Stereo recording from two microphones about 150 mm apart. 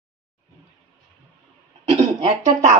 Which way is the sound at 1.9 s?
45° right (ahead or behind).